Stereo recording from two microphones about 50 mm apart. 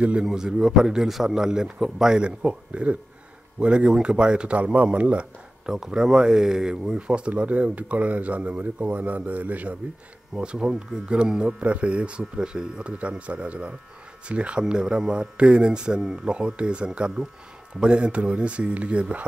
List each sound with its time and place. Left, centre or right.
0.0 s speech: centre
5.7 s speech: centre; by 9.8 s right
10.3 s speech: centre